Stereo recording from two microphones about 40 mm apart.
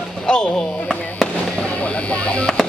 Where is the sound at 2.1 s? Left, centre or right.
Left.